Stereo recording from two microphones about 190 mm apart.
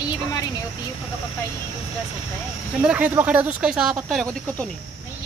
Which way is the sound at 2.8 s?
10° right (ahead or behind).